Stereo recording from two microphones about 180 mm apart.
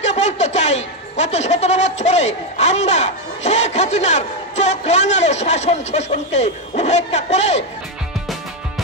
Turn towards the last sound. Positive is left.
turn(degrees=40)  # may be behind; listen again after turning